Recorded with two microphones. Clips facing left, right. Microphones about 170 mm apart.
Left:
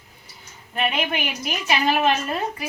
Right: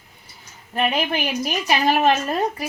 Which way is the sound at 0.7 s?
35° right (ahead or behind).